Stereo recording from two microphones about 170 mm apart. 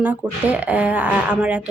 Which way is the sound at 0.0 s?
10° right (ahead or behind).